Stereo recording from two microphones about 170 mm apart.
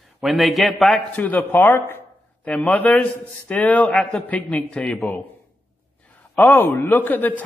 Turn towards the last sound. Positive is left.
turn(degrees=10)  # may be behind; listen again after turning